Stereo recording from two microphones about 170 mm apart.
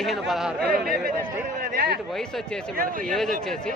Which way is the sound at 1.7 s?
65° right (ahead or behind).